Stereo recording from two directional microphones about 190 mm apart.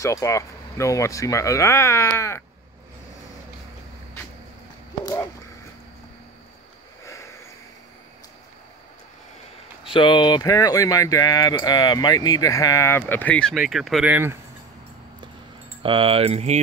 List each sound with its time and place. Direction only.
0.0 s speech: 15° left (ahead or behind)
9.8 s speech: 25° left (ahead or behind); by 14.4 s 10° right (ahead or behind)
15.8 s speech: 30° right (ahead or behind)